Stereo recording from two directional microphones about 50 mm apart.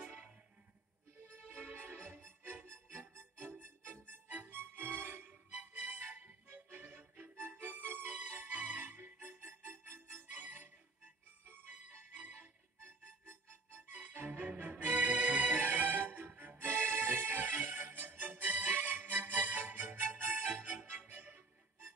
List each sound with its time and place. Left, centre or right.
1.5 s music: right
10.3 s music: right
12.2 s music: right
13.9 s music: right